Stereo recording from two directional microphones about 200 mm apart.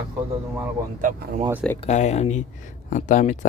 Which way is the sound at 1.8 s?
35° left (ahead or behind).